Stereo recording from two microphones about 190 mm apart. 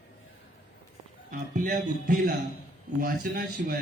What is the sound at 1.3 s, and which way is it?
Speech, 45° right (ahead or behind).